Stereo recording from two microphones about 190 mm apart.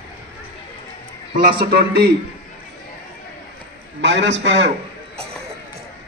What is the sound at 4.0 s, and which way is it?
Speech, 70° right (ahead or behind).